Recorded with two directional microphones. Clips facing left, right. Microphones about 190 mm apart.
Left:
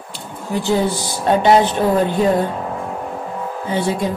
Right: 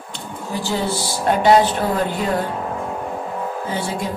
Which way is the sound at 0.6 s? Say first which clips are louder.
Left 4 dB; 15° left (ahead or behind).